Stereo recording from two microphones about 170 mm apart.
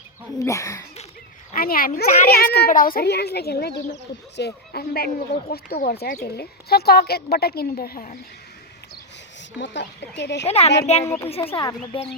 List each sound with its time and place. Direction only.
0.3 s speech: 15° left (ahead or behind)
1.5 s a child's voice: 60° left (ahead or behind)
9.6 s speech: 90° left
10.4 s a woman's voice: 35° left (ahead or behind)
11.0 s speech: 15° left (ahead or behind)
11.4 s speech: 25° left (ahead or behind)